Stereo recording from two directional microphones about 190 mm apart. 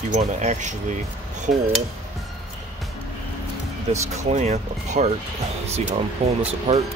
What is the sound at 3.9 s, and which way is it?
Speech, 35° right (ahead or behind).